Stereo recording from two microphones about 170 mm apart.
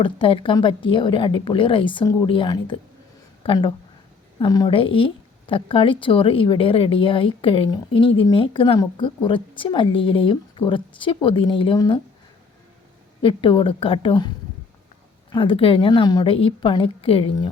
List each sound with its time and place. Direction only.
0.0 s a woman's voice: 30° left (ahead or behind)
13.2 s a woman's voice: 30° left (ahead or behind)